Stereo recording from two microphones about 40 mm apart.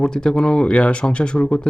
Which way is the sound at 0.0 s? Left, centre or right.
Centre.